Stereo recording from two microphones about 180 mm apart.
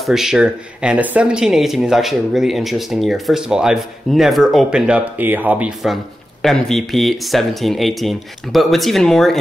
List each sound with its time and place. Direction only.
0.0 s speech: centre (ahead or behind)